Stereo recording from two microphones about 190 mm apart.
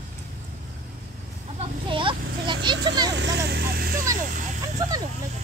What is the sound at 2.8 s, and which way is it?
Speech, 20° right (ahead or behind).